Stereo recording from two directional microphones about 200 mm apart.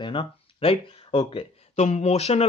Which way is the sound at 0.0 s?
25° left (ahead or behind).